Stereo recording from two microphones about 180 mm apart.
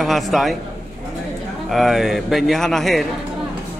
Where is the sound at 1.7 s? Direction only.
Centre (ahead or behind).